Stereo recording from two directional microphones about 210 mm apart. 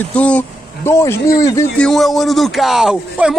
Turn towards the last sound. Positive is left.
turn(degrees=-5)  # may be behind; listen again after turning